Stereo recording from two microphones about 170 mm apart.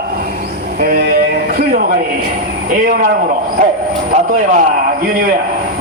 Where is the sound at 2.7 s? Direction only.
60° right (ahead or behind).